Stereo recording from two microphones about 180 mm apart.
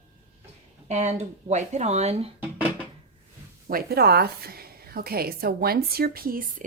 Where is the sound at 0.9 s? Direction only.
40° right (ahead or behind).